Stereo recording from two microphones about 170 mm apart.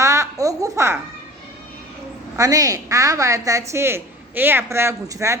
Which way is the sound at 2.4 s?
20° right (ahead or behind).